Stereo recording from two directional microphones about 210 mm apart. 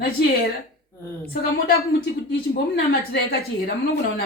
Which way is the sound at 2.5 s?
45° left (ahead or behind).